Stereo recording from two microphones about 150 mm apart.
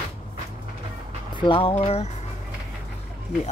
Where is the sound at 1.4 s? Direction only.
35° left (ahead or behind).